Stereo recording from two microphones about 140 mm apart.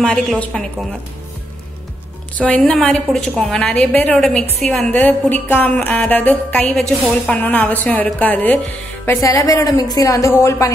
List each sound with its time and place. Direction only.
0.0 s a woman's voice: 5° left (ahead or behind)
2.3 s a woman's voice: 10° left (ahead or behind)